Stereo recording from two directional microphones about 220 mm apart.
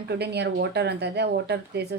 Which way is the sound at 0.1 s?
50° right (ahead or behind).